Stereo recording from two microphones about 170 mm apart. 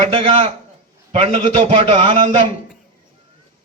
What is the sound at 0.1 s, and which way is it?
A man's voice, 30° right (ahead or behind).